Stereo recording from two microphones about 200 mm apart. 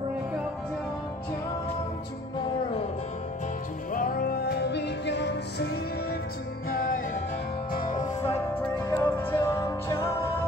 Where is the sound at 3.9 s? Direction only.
45° left (ahead or behind).